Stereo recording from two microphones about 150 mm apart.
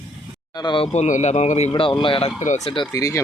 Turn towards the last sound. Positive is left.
turn(degrees=20)  # may be behind; listen again after turning